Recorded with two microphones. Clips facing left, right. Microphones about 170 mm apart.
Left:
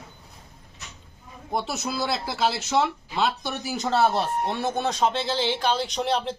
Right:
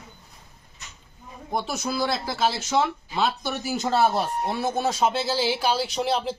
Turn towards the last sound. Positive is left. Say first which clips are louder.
# right 1 dB
turn(degrees=-5)  # may be behind; listen again after turning